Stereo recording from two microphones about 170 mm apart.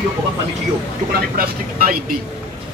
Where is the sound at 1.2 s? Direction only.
60° right (ahead or behind).